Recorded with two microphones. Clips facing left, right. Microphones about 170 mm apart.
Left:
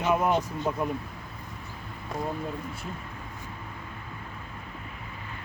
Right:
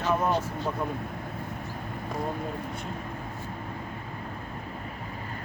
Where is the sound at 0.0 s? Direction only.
15° left (ahead or behind).